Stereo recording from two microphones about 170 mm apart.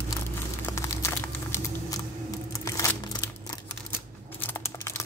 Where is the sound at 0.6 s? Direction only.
15° left (ahead or behind).